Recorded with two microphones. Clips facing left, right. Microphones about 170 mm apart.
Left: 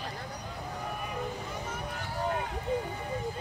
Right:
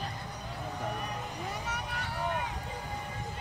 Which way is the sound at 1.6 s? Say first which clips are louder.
Even; 70° right (ahead or behind).